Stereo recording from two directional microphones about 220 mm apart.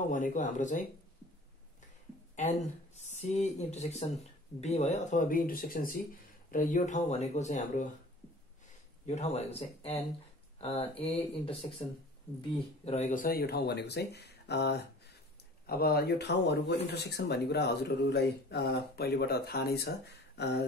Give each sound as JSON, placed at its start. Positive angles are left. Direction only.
{"t": 0.1, "sound": "speech", "side_deg": 35}
{"t": 2.3, "sound": "speech", "side_deg": 30}
{"t": 9.0, "sound": "speech", "side_deg": 30}
{"t": 12.8, "sound": "speech", "side_deg": 30}